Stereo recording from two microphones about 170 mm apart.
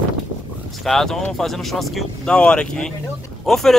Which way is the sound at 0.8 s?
Centre (ahead or behind).